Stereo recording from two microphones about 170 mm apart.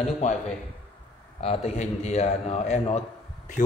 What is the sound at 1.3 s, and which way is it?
A man's voice, 35° left (ahead or behind).